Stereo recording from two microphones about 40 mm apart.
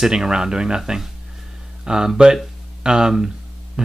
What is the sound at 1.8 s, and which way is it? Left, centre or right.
Speech, centre.